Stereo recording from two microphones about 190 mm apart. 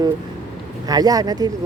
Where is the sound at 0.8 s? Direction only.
20° right (ahead or behind).